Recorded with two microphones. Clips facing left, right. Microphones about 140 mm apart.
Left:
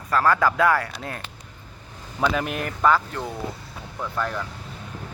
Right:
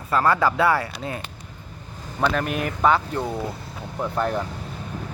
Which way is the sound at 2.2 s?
Centre (ahead or behind).